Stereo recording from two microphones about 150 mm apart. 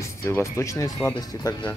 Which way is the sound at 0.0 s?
20° left (ahead or behind).